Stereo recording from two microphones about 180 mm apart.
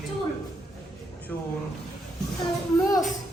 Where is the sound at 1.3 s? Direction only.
10° left (ahead or behind).